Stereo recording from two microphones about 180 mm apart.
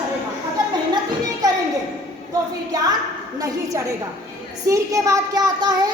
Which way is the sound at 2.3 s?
20° right (ahead or behind).